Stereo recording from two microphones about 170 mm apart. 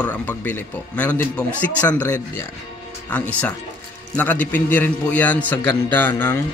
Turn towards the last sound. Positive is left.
turn(degrees=10)  # may be behind; listen again after turning